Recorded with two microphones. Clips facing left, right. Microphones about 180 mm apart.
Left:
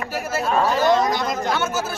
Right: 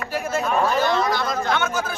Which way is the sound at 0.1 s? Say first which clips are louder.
Right 2 dB; 5° left (ahead or behind).